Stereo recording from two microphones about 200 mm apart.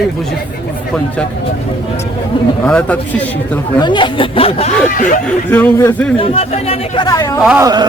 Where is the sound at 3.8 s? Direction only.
25° left (ahead or behind).